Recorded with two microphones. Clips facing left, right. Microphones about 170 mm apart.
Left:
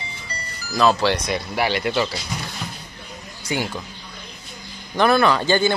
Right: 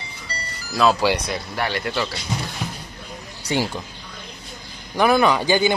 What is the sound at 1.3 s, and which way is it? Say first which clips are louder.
Speech: left 3 dB; 5° left (ahead or behind).